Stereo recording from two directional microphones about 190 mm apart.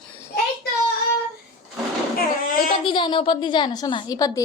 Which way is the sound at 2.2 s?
45° left (ahead or behind).